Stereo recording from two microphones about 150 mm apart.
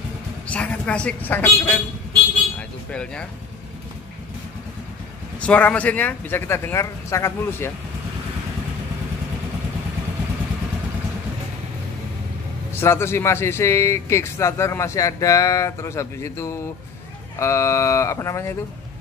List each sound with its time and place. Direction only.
0.5 s a woman's voice: 10° left (ahead or behind)
2.9 s speech: 5° left (ahead or behind)
5.4 s speech: 10° left (ahead or behind)
12.7 s speech: 15° left (ahead or behind)